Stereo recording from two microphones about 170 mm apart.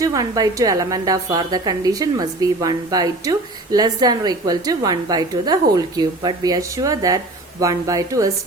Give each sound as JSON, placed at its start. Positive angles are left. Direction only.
{"t": 0.0, "sound": "a woman's voice", "side_deg": -20}